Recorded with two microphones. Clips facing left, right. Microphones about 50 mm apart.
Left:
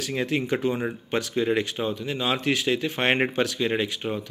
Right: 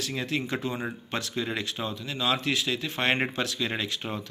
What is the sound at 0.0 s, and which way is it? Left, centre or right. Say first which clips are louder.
Speech: left 4 dB; left.